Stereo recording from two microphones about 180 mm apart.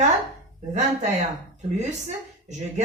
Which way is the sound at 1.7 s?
40° right (ahead or behind).